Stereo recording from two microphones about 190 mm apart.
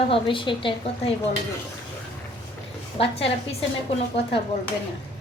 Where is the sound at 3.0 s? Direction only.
30° left (ahead or behind).